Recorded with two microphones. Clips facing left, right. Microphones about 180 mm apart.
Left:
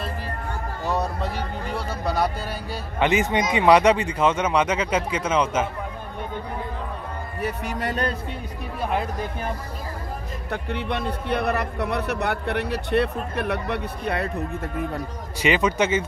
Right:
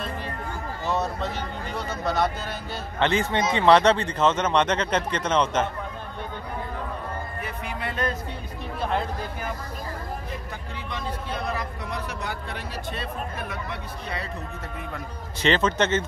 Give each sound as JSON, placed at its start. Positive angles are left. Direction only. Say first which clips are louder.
{"t": 0.9, "sound": "a sound", "louder": "left 1 dB", "side_deg": 10}
{"t": 3.0, "sound": "speech", "louder": "left 2 dB", "side_deg": 15}
{"t": 7.4, "sound": "music", "louder": "left 9 dB", "side_deg": 40}
{"t": 10.5, "sound": "speech", "louder": "left 8 dB", "side_deg": 65}
{"t": 15.4, "sound": "speech", "louder": "left 1 dB", "side_deg": 10}